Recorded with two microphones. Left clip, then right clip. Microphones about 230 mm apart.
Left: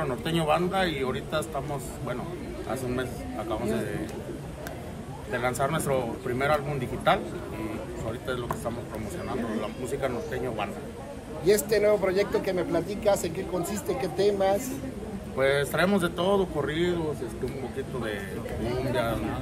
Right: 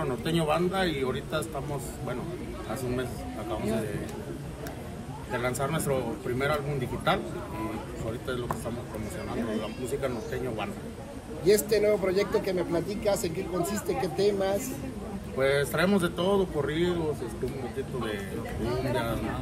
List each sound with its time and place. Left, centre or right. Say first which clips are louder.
0.0 s speech: left 1 dB; centre
5.3 s speech: left 3 dB; centre
8.3 s speech: left 1 dB; centre
9.6 s speech: left 1 dB; centre